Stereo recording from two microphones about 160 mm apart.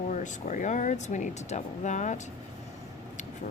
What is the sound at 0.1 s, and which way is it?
Speech, 50° left (ahead or behind).